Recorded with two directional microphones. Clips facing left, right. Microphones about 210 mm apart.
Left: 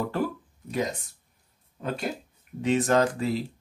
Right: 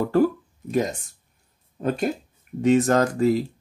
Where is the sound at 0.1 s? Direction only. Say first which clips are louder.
Right 9 dB; 45° right (ahead or behind).